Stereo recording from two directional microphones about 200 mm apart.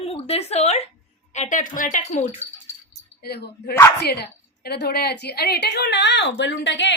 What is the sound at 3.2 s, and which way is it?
A woman's voice, 50° left (ahead or behind).